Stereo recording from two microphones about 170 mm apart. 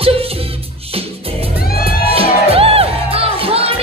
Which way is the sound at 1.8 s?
35° right (ahead or behind).